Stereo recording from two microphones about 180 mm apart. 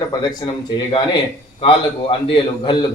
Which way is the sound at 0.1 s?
25° left (ahead or behind).